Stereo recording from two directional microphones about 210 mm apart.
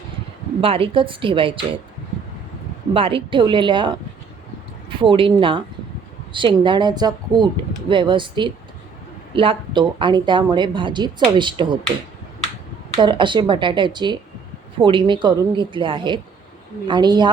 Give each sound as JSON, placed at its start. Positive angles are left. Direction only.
{"t": 0.6, "sound": "a woman's voice", "side_deg": -25}
{"t": 2.9, "sound": "a woman's voice", "side_deg": -25}
{"t": 4.9, "sound": "a woman's voice", "side_deg": -25}
{"t": 13.0, "sound": "a woman's voice", "side_deg": -20}